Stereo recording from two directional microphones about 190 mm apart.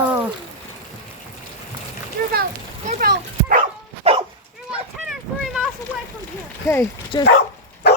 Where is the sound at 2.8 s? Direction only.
50° right (ahead or behind).